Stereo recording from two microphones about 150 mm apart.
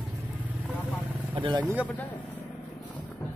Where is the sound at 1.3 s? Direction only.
35° right (ahead or behind).